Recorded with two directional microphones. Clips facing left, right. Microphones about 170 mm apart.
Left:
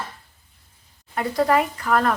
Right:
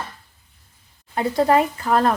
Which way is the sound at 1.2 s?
25° right (ahead or behind).